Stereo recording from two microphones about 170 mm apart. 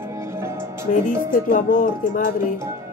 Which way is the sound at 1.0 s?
50° left (ahead or behind).